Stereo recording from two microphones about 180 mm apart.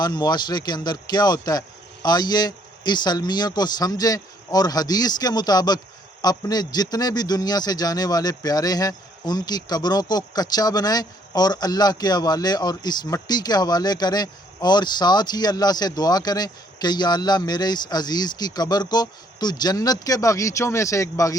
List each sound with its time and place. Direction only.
0.0 s a man's voice: 20° left (ahead or behind)